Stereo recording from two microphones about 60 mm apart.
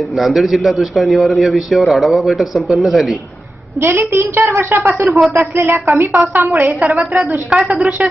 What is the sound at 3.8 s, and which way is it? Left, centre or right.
A woman's voice, right.